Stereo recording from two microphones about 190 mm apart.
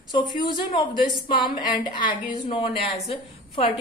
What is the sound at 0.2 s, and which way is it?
A woman's voice, 25° left (ahead or behind).